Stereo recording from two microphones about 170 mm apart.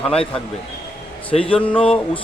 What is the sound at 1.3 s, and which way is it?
Speech, 40° left (ahead or behind).